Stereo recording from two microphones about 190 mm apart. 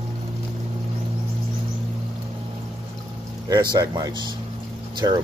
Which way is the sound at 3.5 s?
20° right (ahead or behind).